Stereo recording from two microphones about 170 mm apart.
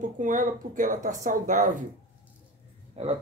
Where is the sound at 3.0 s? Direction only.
35° right (ahead or behind).